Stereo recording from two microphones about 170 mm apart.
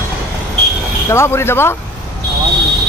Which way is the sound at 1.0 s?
15° left (ahead or behind).